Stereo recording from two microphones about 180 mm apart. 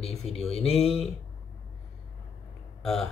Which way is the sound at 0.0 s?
35° left (ahead or behind).